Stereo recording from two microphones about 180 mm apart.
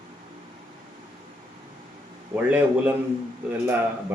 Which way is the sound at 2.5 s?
10° right (ahead or behind).